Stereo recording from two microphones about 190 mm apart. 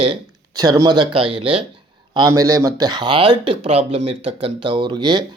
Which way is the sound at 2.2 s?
20° right (ahead or behind).